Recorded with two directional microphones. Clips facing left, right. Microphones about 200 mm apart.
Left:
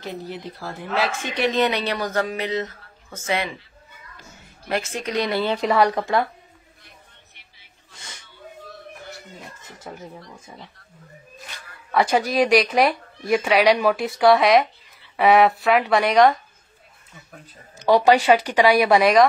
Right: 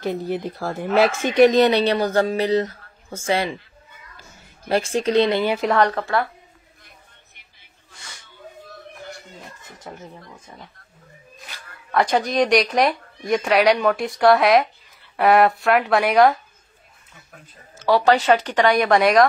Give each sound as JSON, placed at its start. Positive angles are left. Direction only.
{"t": 0.0, "sound": "speech", "side_deg": -55}
{"t": 4.6, "sound": "speech", "side_deg": -30}
{"t": 5.4, "sound": "a woman's voice", "side_deg": -10}
{"t": 5.7, "sound": "speech", "side_deg": 10}
{"t": 7.9, "sound": "a sound", "side_deg": 20}
{"t": 11.4, "sound": "speech", "side_deg": 5}
{"t": 17.7, "sound": "speech", "side_deg": 15}